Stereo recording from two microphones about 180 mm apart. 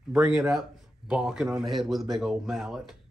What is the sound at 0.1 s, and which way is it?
Speech, 5° right (ahead or behind).